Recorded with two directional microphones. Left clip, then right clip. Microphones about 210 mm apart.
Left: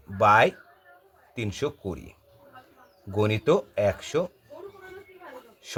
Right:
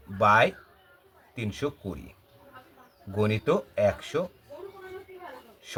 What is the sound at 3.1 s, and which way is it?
Speech, 40° left (ahead or behind).